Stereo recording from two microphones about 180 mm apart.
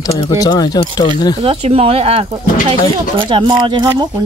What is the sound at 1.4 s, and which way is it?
Speech, 35° right (ahead or behind).